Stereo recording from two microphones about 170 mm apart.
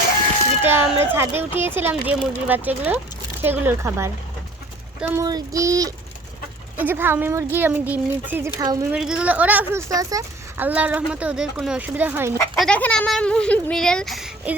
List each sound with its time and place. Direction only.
0.6 s speech: 15° right (ahead or behind)
5.2 s child singing: 20° right (ahead or behind)
6.7 s speech: 10° right (ahead or behind)
8.5 s child singing: 20° right (ahead or behind)
8.9 s speech: 5° right (ahead or behind)
9.9 s speech: 20° right (ahead or behind)
10.7 s speech: 10° right (ahead or behind)
12.5 s speech: 5° left (ahead or behind)